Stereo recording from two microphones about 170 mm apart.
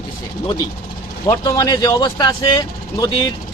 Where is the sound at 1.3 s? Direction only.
20° left (ahead or behind).